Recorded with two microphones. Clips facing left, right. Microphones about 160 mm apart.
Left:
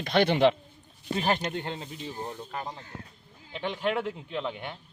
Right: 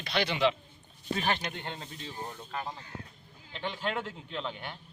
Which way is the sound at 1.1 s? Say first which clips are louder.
Left 4 dB; 35° left (ahead or behind).